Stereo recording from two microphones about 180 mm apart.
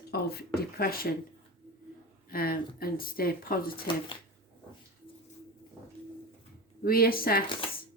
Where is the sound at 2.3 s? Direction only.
55° left (ahead or behind).